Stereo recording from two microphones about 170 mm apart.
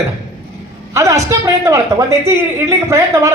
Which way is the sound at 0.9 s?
20° right (ahead or behind).